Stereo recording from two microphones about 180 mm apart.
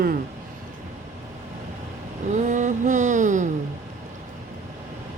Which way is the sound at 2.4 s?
45° right (ahead or behind).